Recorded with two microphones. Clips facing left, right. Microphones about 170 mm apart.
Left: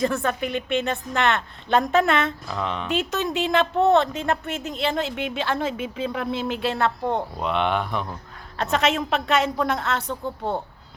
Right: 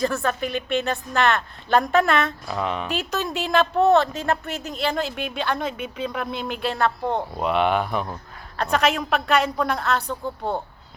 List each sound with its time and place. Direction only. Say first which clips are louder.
0.0 s a woman's voice: even; 20° left (ahead or behind)
2.5 s speech: right 2 dB; 5° right (ahead or behind)
2.9 s a woman's voice: left 2 dB; 20° left (ahead or behind)
7.3 s speech: right 3 dB; 5° right (ahead or behind)
8.5 s a woman's voice: right 1 dB; 25° left (ahead or behind)